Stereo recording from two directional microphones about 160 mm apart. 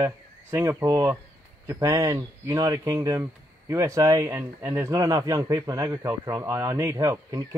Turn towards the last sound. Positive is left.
turn(degrees=-20)  # may be behind; listen again after turning